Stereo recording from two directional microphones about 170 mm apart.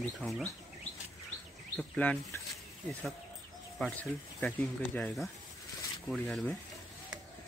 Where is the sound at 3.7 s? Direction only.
5° left (ahead or behind).